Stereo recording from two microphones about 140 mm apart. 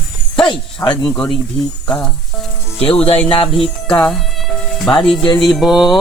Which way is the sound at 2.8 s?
45° left (ahead or behind).